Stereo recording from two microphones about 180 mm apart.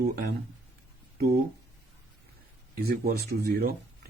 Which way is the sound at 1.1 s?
60° right (ahead or behind).